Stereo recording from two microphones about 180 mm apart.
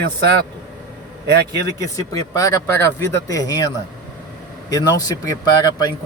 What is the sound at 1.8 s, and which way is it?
Speech, 20° left (ahead or behind).